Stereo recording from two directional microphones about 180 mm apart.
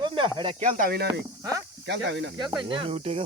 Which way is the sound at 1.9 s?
80° right.